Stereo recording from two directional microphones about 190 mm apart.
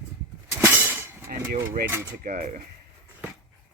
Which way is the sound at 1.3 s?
55° right (ahead or behind).